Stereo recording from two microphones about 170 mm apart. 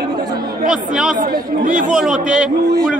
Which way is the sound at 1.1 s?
50° right (ahead or behind).